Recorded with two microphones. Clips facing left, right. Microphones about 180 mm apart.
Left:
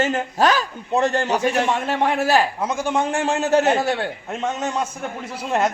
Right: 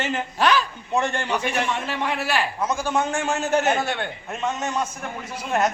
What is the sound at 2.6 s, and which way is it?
A man's voice, 20° left (ahead or behind).